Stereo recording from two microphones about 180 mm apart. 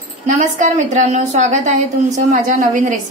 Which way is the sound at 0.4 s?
40° right (ahead or behind).